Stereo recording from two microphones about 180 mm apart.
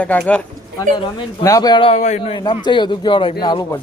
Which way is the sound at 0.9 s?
30° left (ahead or behind).